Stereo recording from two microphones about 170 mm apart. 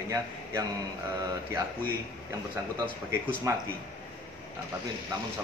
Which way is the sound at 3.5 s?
15° right (ahead or behind).